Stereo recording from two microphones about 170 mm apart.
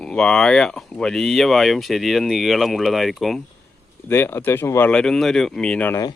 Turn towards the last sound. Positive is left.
turn(degrees=10)  # may be behind; listen again after turning